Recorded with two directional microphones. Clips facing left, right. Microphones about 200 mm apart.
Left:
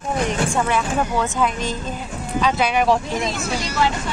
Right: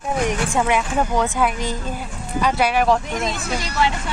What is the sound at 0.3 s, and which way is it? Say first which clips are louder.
Speech: right 2 dB; 15° right (ahead or behind).